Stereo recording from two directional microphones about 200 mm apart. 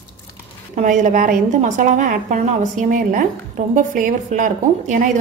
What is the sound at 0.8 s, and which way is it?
A woman's voice, 40° right (ahead or behind).